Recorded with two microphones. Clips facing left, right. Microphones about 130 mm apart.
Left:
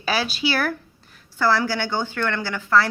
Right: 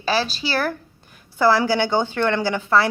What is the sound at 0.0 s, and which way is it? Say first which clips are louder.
Speech: right 1 dB; 40° right (ahead or behind).